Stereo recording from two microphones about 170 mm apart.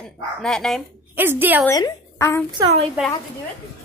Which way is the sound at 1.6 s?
20° left (ahead or behind).